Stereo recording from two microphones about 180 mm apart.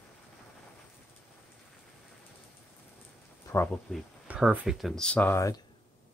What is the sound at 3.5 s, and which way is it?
Speech, 15° left (ahead or behind).